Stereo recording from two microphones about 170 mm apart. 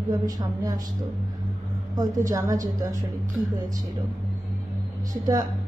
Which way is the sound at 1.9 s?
20° right (ahead or behind).